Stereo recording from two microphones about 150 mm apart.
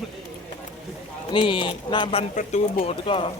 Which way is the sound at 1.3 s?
35° left (ahead or behind).